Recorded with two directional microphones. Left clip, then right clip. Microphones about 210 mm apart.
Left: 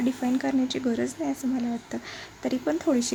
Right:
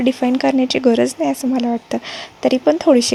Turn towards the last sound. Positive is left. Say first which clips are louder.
# right 13 dB
turn(degrees=-30)  # may be behind; listen again after turning